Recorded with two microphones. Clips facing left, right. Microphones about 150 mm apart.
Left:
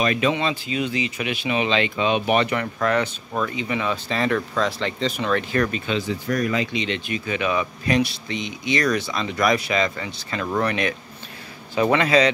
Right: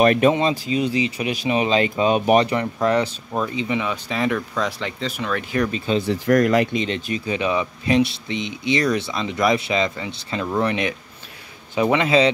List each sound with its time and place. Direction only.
0.0 s speech: 50° right (ahead or behind); by 3.4 s 30° right (ahead or behind)
3.4 s speech: 20° right (ahead or behind); by 5.6 s 5° right (ahead or behind)
5.9 s speech: 75° right (ahead or behind)
6.7 s speech: 40° right (ahead or behind); by 12.3 s 20° right (ahead or behind)